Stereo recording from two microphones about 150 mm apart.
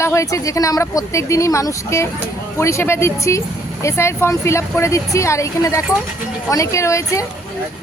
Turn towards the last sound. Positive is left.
turn(degrees=20)  # may be behind; listen again after turning